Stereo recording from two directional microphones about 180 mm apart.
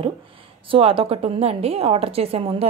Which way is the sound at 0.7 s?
30° right (ahead or behind).